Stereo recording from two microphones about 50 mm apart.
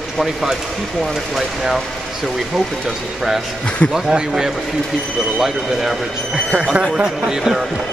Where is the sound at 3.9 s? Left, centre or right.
Centre.